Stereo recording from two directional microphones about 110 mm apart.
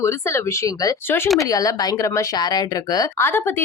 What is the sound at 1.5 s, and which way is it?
Speech, 35° left (ahead or behind).